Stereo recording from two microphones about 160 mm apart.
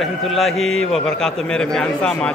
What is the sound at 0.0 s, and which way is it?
A man's voice, centre (ahead or behind).